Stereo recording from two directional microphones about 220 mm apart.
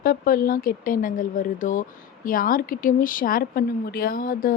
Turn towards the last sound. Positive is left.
turn(degrees=40)  # may be behind; listen again after turning